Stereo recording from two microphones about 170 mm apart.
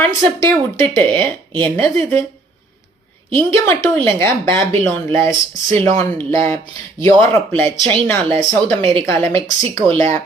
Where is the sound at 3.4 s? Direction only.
10° left (ahead or behind).